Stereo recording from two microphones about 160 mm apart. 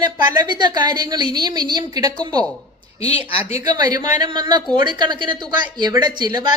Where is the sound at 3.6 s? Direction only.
25° right (ahead or behind).